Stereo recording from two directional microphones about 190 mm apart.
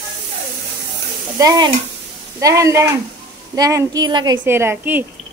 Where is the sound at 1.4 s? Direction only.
15° right (ahead or behind).